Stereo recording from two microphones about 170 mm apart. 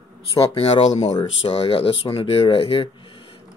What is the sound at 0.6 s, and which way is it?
Speech, 35° left (ahead or behind).